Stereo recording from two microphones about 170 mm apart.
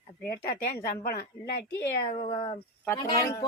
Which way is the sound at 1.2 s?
75° left (ahead or behind).